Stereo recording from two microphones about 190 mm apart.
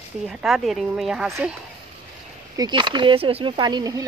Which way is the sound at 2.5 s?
25° right (ahead or behind).